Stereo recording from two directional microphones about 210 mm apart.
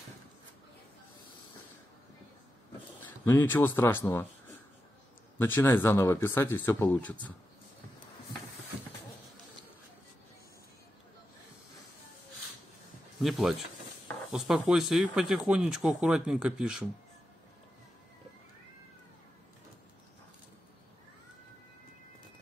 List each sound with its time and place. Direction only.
3.0 s a man's voice: 10° left (ahead or behind)
5.4 s speech: 10° left (ahead or behind)
13.2 s speech: centre (ahead or behind)